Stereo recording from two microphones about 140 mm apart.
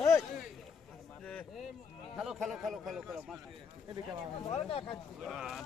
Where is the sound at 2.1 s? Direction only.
5° right (ahead or behind).